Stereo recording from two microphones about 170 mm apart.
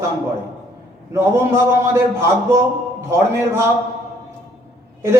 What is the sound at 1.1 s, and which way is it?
Speech, 15° right (ahead or behind).